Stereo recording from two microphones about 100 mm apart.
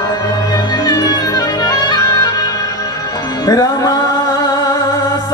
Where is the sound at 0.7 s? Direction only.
40° left (ahead or behind).